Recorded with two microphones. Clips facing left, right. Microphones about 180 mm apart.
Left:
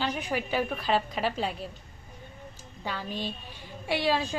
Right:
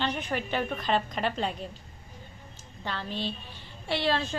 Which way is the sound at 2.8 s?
10° left (ahead or behind).